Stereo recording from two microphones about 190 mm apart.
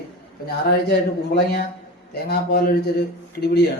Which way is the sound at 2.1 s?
55° left (ahead or behind).